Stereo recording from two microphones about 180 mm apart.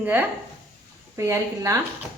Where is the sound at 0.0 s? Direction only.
10° right (ahead or behind).